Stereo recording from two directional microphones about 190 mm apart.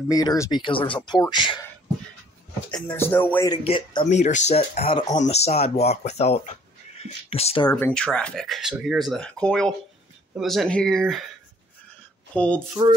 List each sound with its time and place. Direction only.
0.1 s speech: 20° left (ahead or behind)
2.7 s speech: 10° left (ahead or behind)
3.6 s speech: 30° left (ahead or behind)
7.7 s speech: 5° left (ahead or behind)
12.4 s speech: 5° left (ahead or behind)